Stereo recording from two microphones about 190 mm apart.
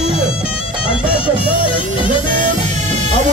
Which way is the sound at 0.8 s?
30° left (ahead or behind).